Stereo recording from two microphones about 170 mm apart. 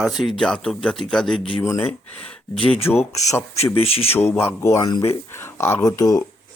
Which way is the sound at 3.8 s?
35° left (ahead or behind).